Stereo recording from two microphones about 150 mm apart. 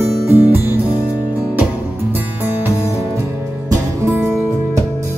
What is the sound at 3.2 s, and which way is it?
Music, 20° right (ahead or behind).